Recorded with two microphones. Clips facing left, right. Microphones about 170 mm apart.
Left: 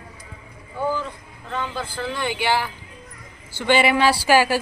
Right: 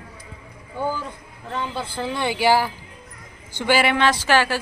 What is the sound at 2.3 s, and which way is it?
Speech, 40° right (ahead or behind).